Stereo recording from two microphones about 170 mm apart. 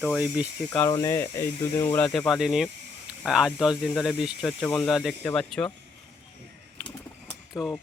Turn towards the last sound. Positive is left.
turn(degrees=20)  # may be behind; listen again after turning